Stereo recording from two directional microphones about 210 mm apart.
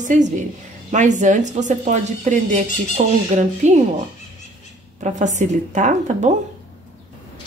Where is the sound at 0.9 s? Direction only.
35° right (ahead or behind).